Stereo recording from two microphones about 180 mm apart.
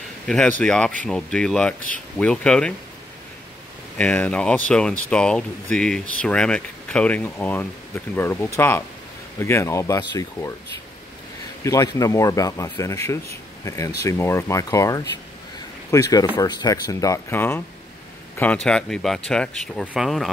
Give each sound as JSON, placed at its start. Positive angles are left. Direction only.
{"t": 0.3, "sound": "speech", "side_deg": 5}
{"t": 4.0, "sound": "speech", "side_deg": 5}
{"t": 11.6, "sound": "speech", "side_deg": 20}